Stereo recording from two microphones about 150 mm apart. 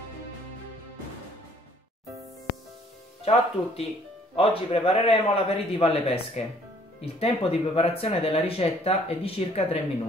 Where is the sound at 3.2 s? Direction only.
45° left (ahead or behind).